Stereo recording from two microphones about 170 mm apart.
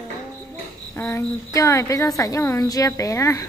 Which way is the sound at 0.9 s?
15° left (ahead or behind).